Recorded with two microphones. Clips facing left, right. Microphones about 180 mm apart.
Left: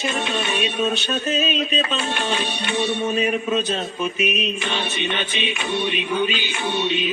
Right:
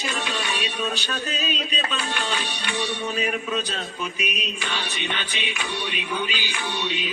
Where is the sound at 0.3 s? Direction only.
25° left (ahead or behind).